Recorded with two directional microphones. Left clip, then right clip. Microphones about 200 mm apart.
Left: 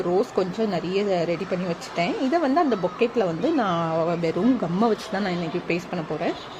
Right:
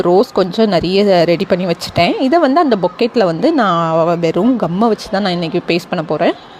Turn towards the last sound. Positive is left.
turn(degrees=-40)  # may be behind; listen again after turning